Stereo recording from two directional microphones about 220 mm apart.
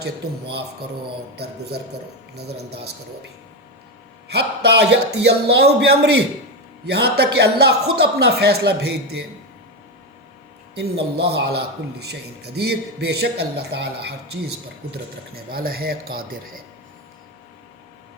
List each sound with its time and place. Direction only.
2.3 s a man's voice: 50° right (ahead or behind)
4.3 s a man's voice: 50° right (ahead or behind)
10.8 s a man's voice: 50° right (ahead or behind)